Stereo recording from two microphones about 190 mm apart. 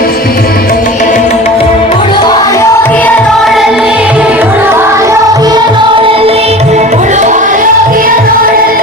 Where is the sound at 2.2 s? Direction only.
15° left (ahead or behind).